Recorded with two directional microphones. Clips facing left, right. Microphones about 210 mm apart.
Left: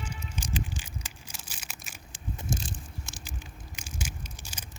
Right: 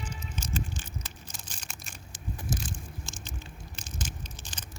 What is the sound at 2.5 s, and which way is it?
Biting, 30° left (ahead or behind).